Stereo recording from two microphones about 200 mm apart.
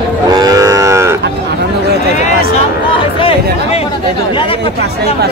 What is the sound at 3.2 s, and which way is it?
Chatter, 30° left (ahead or behind).